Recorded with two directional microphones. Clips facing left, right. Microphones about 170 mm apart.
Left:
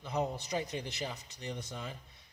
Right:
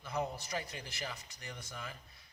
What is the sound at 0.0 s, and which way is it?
A man's voice, 20° left (ahead or behind).